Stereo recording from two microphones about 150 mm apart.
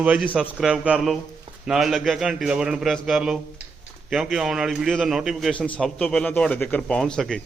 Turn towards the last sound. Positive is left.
turn(degrees=5)  # may be behind; listen again after turning